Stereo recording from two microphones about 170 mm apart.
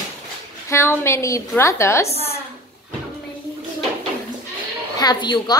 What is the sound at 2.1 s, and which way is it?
Speech, 35° left (ahead or behind).